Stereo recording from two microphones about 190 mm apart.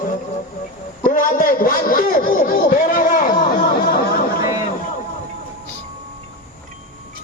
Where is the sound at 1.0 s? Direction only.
45° left (ahead or behind).